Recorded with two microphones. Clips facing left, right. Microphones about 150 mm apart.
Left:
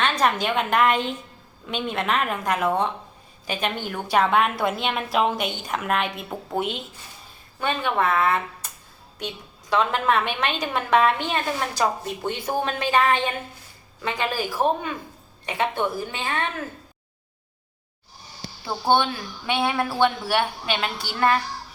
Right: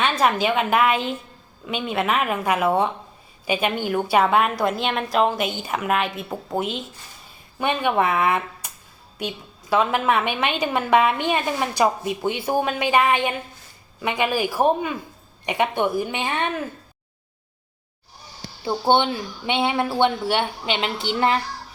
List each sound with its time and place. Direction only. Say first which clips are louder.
0.0 s a woman's voice: right 2 dB; 5° right (ahead or behind)
7.6 s a woman's voice: right 3 dB; 15° right (ahead or behind)
18.6 s speech: right 2 dB; 20° right (ahead or behind)